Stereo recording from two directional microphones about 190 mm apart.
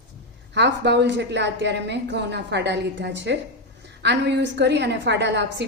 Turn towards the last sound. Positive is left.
turn(degrees=-65)  # may be behind; listen again after turning